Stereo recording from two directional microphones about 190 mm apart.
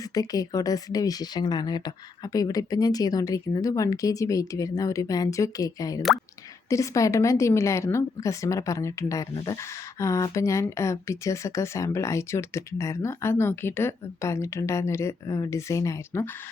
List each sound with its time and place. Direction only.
0.1 s a woman's voice: 20° left (ahead or behind)